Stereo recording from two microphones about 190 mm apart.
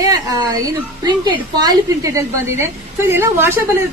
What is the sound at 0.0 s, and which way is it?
A woman's voice, 20° right (ahead or behind).